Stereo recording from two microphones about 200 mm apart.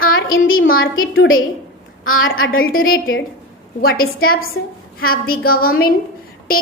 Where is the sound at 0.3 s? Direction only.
85° left.